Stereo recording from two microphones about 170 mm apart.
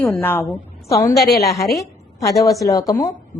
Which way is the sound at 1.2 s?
65° left (ahead or behind).